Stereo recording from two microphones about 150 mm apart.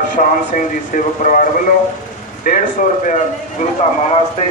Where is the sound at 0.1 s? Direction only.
65° left (ahead or behind).